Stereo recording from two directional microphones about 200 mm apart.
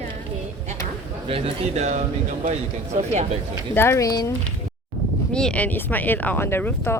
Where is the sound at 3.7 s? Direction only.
10° left (ahead or behind).